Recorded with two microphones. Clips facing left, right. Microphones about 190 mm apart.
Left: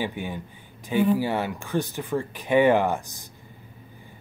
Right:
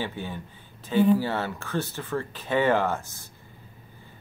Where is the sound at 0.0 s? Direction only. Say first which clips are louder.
Left 3 dB; 15° left (ahead or behind).